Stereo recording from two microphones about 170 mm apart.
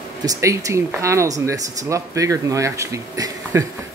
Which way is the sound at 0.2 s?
20° right (ahead or behind).